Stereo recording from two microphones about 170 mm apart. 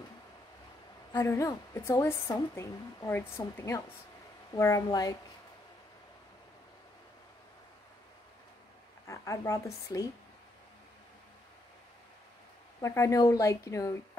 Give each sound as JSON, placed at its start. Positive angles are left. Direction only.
{"t": 1.1, "sound": "a woman's voice", "side_deg": 15}
{"t": 9.0, "sound": "a woman's voice", "side_deg": 20}
{"t": 12.8, "sound": "speech", "side_deg": 20}